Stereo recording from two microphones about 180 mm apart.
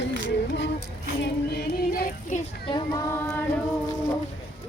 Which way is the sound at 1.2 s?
60° left (ahead or behind).